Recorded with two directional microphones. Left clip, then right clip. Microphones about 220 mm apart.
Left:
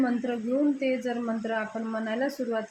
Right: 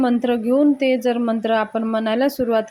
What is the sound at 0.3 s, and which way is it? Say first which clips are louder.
Speech: right 10 dB; 40° right (ahead or behind).